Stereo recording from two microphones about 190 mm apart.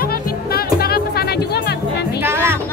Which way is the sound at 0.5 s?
55° left (ahead or behind).